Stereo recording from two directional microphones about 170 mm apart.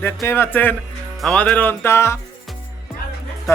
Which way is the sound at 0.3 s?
15° left (ahead or behind).